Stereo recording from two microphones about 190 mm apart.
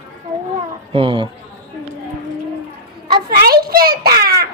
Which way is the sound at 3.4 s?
55° right (ahead or behind).